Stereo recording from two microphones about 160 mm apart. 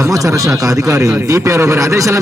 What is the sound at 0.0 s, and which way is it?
A man's voice, 20° right (ahead or behind).